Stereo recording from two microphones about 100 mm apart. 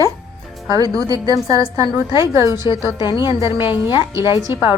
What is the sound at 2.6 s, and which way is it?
A woman's voice, 55° left (ahead or behind).